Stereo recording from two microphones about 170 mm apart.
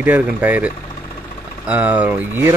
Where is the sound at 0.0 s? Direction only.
10° right (ahead or behind).